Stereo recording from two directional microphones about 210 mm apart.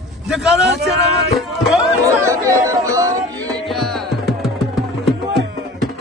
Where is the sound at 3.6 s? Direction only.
Centre (ahead or behind).